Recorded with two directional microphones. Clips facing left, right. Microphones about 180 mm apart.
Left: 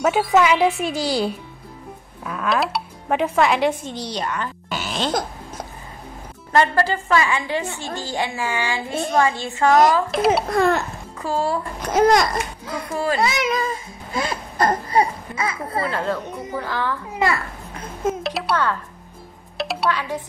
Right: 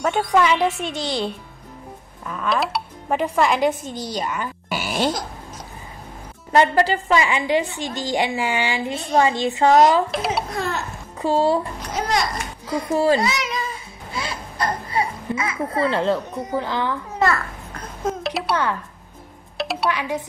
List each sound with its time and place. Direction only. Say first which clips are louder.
0.0 s speech: left 2 dB; 5° left (ahead or behind)
6.5 s a woman's voice: right 2 dB; 20° right (ahead or behind)
10.1 s speech: left 6 dB; centre (ahead or behind)
10.5 s a child's voice: left 8 dB; 55° left (ahead or behind)
11.1 s speech: right 4 dB; 25° right (ahead or behind)
11.8 s a child's voice: left 7 dB; 50° left (ahead or behind)
12.9 s a woman's voice: right 5 dB; 25° right (ahead or behind)
13.2 s a sound: left 3 dB; 55° left (ahead or behind); by 15.8 s 35° left (ahead or behind)
15.8 s a woman's voice: right 4 dB; 25° right (ahead or behind)
17.2 s babbling: right 1 dB; 10° left (ahead or behind)
19.5 s music: even; centre (ahead or behind)
19.9 s a woman's voice: even; 15° right (ahead or behind)